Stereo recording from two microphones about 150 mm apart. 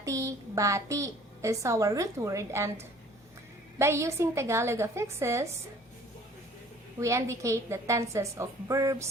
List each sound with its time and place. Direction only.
0.0 s a woman's voice: 20° right (ahead or behind)
3.8 s a woman's voice: 20° right (ahead or behind)
7.0 s a woman's voice: 20° right (ahead or behind)